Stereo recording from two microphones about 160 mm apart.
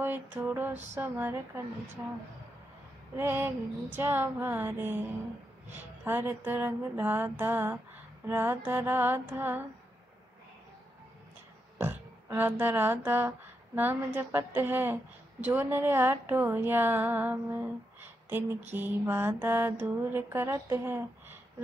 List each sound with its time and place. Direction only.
0.0 s music: 10° right (ahead or behind)
0.9 s speech: 10° right (ahead or behind)
3.2 s speech: 15° right (ahead or behind)
11.8 s speech: 15° right (ahead or behind)